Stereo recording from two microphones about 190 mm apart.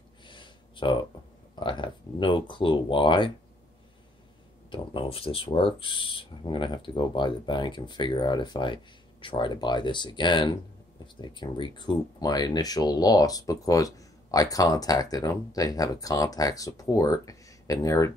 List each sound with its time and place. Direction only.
0.2 s a sound: 25° left (ahead or behind)
1.5 s speech: 25° left (ahead or behind)
4.6 s speech: 25° left (ahead or behind)